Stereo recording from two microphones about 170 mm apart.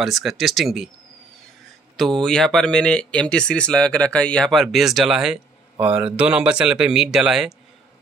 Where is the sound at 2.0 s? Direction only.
Centre (ahead or behind).